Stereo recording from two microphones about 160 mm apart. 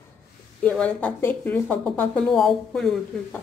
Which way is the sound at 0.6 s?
5° left (ahead or behind).